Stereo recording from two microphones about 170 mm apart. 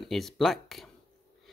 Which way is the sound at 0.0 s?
Centre (ahead or behind).